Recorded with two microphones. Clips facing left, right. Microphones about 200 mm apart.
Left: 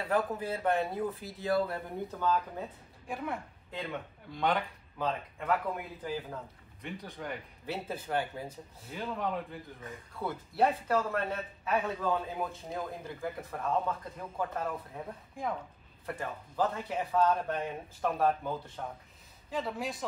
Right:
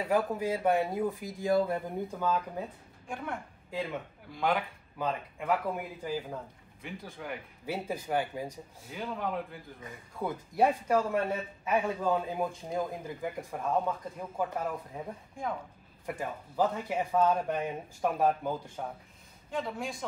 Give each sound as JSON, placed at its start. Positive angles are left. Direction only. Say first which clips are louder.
{"t": 0.0, "sound": "a man's voice", "louder": "right 2 dB", "side_deg": -10}
{"t": 3.1, "sound": "speech", "louder": "left 1 dB", "side_deg": 0}
{"t": 7.6, "sound": "a man's voice", "louder": "right 3 dB", "side_deg": -10}
{"t": 8.9, "sound": "speech", "louder": "even", "side_deg": 0}
{"t": 10.1, "sound": "a man's voice", "louder": "right 2 dB", "side_deg": -15}
{"t": 19.5, "sound": "speech", "louder": "even", "side_deg": 0}